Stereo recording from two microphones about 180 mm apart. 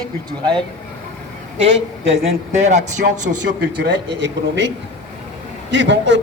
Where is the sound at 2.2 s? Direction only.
40° right (ahead or behind).